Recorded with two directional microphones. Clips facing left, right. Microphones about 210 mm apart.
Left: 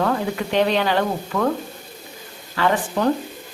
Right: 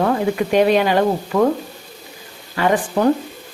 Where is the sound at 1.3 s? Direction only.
30° right (ahead or behind).